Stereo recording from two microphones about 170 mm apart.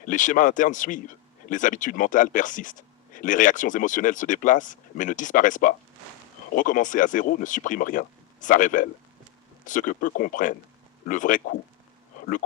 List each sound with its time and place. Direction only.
0.0 s speech: 50° left (ahead or behind)